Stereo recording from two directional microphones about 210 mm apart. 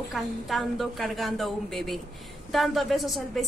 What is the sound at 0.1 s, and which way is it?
A woman's voice, centre (ahead or behind).